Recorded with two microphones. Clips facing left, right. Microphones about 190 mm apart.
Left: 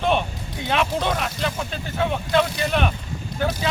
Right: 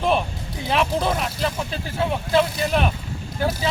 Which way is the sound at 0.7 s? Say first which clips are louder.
Right 1 dB; 5° right (ahead or behind).